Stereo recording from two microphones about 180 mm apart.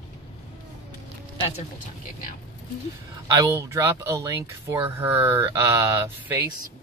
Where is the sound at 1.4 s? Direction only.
35° left (ahead or behind).